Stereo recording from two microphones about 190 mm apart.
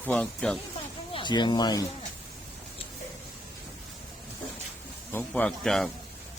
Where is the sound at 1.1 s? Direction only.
25° left (ahead or behind).